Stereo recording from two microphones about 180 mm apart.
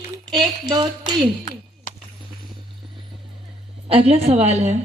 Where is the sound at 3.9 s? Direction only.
35° right (ahead or behind).